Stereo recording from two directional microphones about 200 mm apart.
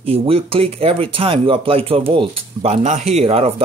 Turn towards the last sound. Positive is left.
turn(degrees=-30)  # may be behind; listen again after turning